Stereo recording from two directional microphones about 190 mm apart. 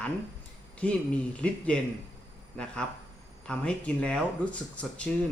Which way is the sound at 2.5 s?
5° left (ahead or behind).